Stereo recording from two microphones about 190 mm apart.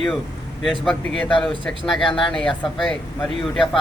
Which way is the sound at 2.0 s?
25° left (ahead or behind).